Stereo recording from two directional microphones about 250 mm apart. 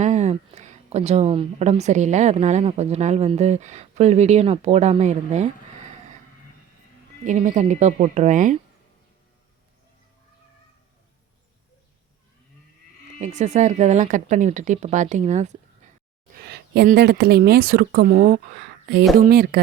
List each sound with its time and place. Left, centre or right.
0.0 s speech: right
7.3 s speech: right
13.2 s speech: right
16.3 s speech: right